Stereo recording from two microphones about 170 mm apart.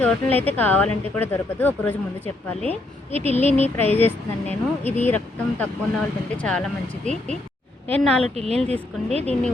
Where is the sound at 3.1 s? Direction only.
40° left (ahead or behind).